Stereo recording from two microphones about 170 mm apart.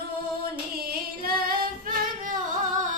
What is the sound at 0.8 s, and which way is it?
Singing, 60° right (ahead or behind).